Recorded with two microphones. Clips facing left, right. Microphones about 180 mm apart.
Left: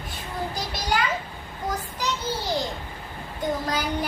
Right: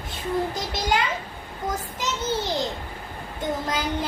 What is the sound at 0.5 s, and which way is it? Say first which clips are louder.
A child's voice: right 2 dB; 20° right (ahead or behind).